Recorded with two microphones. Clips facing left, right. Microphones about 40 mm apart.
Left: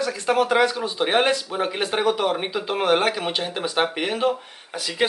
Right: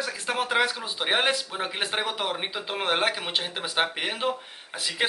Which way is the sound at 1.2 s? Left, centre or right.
Centre.